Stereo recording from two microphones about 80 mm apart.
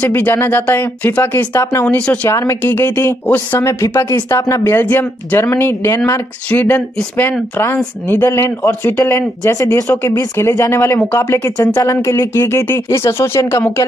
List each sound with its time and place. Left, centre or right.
0.0 s speech: left
1.9 s speech: centre
2.2 s speech: left
4.6 s speech: left
6.5 s speech: left
9.4 s speech: left
10.0 s speech: left